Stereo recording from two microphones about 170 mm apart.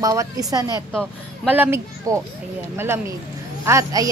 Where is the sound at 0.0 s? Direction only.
20° right (ahead or behind).